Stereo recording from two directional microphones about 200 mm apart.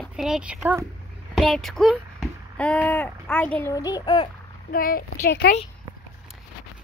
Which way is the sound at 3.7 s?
20° left (ahead or behind).